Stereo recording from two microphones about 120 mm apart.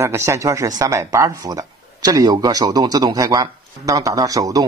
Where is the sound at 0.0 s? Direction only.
20° right (ahead or behind).